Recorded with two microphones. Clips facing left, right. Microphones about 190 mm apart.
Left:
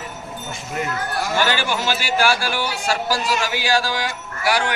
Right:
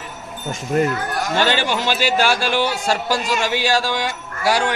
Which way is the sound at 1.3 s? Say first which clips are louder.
Right 3 dB; 25° right (ahead or behind).